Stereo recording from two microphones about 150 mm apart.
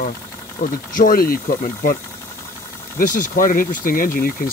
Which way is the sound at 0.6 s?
60° left (ahead or behind).